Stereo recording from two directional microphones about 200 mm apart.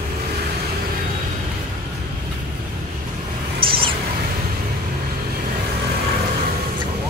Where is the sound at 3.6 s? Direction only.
25° right (ahead or behind).